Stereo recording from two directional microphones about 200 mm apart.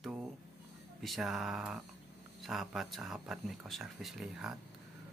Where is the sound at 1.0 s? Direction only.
Centre (ahead or behind).